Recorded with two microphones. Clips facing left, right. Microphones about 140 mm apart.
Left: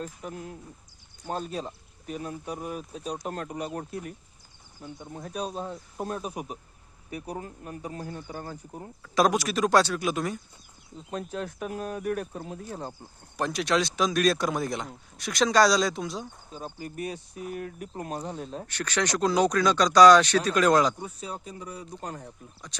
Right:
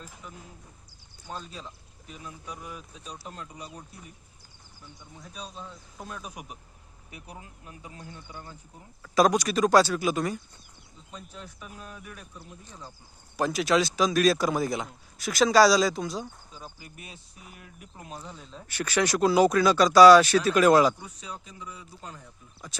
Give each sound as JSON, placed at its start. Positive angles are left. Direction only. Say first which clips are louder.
{"t": 0.0, "sound": "speech", "louder": "left 9 dB", "side_deg": 50}
{"t": 1.3, "sound": "speech", "louder": "left 8 dB", "side_deg": 60}
{"t": 4.9, "sound": "speech", "louder": "left 9 dB", "side_deg": 50}
{"t": 6.0, "sound": "speech", "louder": "left 7 dB", "side_deg": 35}
{"t": 7.1, "sound": "speech", "louder": "left 10 dB", "side_deg": 45}
{"t": 9.1, "sound": "speech", "louder": "right 1 dB", "side_deg": 0}
{"t": 11.1, "sound": "speech", "louder": "left 11 dB", "side_deg": 65}
{"t": 13.3, "sound": "speech", "louder": "right 2 dB", "side_deg": 0}
{"t": 16.8, "sound": "speech", "louder": "left 13 dB", "side_deg": 45}
{"t": 18.7, "sound": "speech", "louder": "right 3 dB", "side_deg": -10}
{"t": 21.0, "sound": "speech", "louder": "left 5 dB", "side_deg": 35}
{"t": 22.7, "sound": "speech", "louder": "right 2 dB", "side_deg": -5}